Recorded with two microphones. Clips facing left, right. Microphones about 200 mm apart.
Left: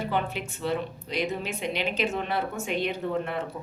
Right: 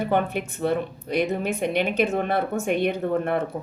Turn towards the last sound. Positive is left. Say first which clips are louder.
# right 5 dB
turn(degrees=-55)  # may be behind; listen again after turning